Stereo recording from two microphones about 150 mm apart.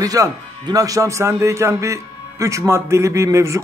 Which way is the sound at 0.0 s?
25° right (ahead or behind).